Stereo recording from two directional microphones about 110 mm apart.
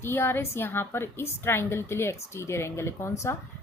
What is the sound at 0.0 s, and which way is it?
A woman's voice, 20° left (ahead or behind).